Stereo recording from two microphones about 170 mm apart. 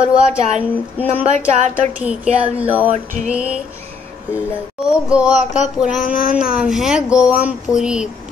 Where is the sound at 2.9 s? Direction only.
45° right (ahead or behind).